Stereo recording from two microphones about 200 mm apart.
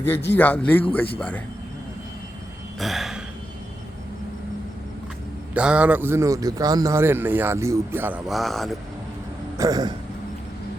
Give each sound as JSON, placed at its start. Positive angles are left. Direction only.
{"t": 0.0, "sound": "a man's voice", "side_deg": 10}
{"t": 2.7, "sound": "burping", "side_deg": 0}
{"t": 5.5, "sound": "speech", "side_deg": -5}
{"t": 9.6, "sound": "a sound", "side_deg": -20}